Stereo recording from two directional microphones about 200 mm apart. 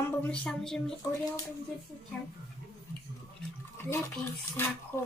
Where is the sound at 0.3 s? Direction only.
5° left (ahead or behind).